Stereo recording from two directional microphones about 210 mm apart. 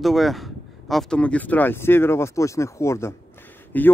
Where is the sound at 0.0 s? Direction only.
Centre (ahead or behind).